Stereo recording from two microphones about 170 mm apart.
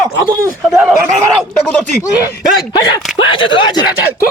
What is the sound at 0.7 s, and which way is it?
Speech, 5° right (ahead or behind).